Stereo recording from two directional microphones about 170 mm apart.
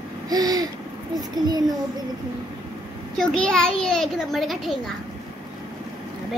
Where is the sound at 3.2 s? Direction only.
5° left (ahead or behind).